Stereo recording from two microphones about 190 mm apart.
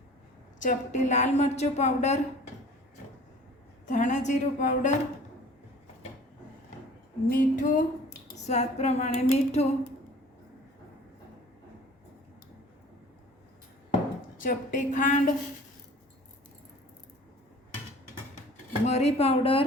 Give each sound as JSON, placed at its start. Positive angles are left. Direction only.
{"t": 0.6, "sound": "a woman's voice", "side_deg": 40}
{"t": 3.8, "sound": "a woman's voice", "side_deg": 40}
{"t": 7.3, "sound": "a sound", "side_deg": 45}
{"t": 8.4, "sound": "a woman's voice", "side_deg": 35}
{"t": 14.3, "sound": "a woman's voice", "side_deg": 45}
{"t": 18.9, "sound": "a woman's voice", "side_deg": 35}